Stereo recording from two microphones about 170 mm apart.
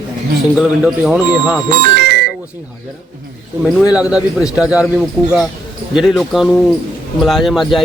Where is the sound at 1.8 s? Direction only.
70° right (ahead or behind).